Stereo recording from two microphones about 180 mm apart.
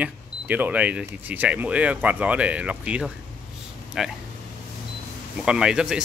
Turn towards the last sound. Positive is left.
turn(degrees=-5)  # may be behind; listen again after turning